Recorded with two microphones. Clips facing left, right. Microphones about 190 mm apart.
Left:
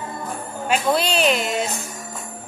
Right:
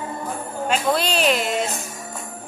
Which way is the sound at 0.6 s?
5° left (ahead or behind).